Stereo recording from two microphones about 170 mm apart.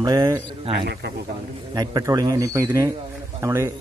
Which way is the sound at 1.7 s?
20° right (ahead or behind).